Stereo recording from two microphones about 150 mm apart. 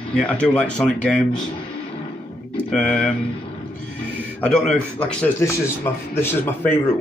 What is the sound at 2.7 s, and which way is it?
Speech, 5° left (ahead or behind).